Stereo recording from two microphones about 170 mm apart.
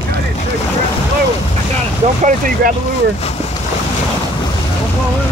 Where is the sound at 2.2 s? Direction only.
55° right (ahead or behind).